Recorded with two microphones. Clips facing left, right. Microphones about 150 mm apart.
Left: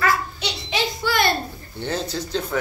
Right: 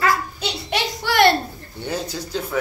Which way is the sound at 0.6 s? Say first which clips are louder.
Even; 65° right (ahead or behind).